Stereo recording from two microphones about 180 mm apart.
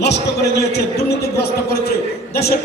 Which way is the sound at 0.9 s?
65° left (ahead or behind).